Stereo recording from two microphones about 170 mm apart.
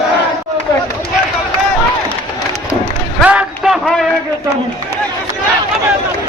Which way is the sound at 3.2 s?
5° right (ahead or behind).